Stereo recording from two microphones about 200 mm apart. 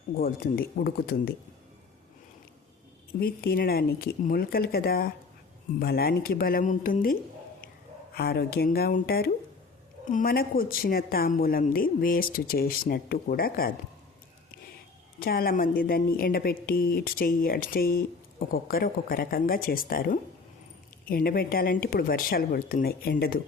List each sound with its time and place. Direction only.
0.2 s a woman's voice: 45° left (ahead or behind)
3.2 s a woman's voice: 50° left (ahead or behind)
15.2 s a woman's voice: 50° left (ahead or behind)